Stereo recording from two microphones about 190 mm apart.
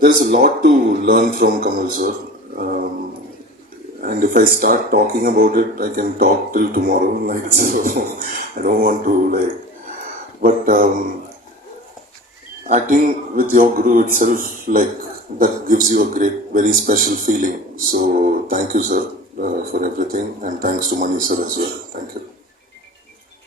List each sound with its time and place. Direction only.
0.0 s speech: 50° right (ahead or behind)
2.6 s a sound: 50° right (ahead or behind)
4.0 s speech: 45° right (ahead or behind)
10.4 s speech: 45° right (ahead or behind)
12.6 s speech: 40° right (ahead or behind)